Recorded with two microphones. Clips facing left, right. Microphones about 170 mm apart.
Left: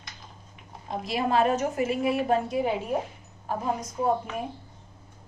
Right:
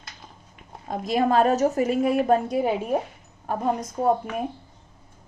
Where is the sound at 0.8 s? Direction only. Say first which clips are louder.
Right 5 dB; 45° right (ahead or behind).